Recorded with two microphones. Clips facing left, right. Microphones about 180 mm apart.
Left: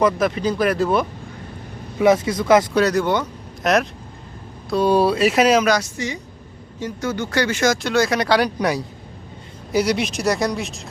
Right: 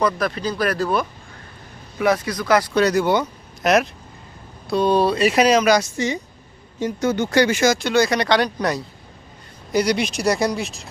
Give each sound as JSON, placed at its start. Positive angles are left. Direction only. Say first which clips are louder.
{"t": 0.0, "sound": "speech", "louder": "left 3 dB", "side_deg": 20}
{"t": 2.7, "sound": "speech", "louder": "right 1 dB", "side_deg": 0}
{"t": 6.7, "sound": "speech", "louder": "right 4 dB", "side_deg": -20}
{"t": 7.6, "sound": "speech", "louder": "right 1 dB", "side_deg": 0}